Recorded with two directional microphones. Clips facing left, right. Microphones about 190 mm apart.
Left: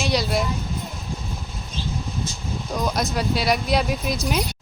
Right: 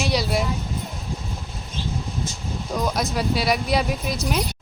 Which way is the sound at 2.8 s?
5° right (ahead or behind).